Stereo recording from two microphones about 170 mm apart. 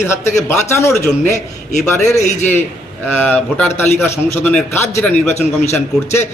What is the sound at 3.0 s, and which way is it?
A man's voice, 5° left (ahead or behind).